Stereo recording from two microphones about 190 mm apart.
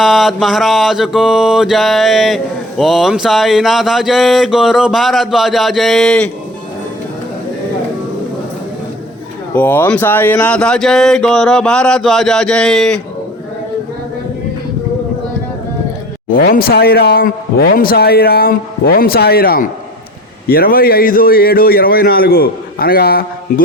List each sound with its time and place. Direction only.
0.0 s mantra: centre (ahead or behind)
9.6 s mantra: 10° left (ahead or behind)
16.3 s a man's voice: 50° left (ahead or behind)